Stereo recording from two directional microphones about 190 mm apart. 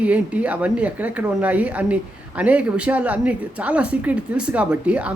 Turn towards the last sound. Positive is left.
turn(degrees=-5)  # may be behind; listen again after turning